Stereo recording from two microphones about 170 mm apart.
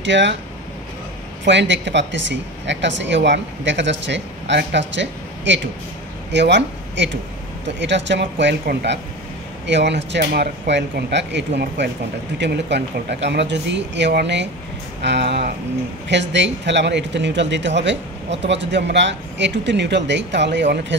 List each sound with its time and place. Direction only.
0.0 s speech: 90° right
1.4 s speech: 90° right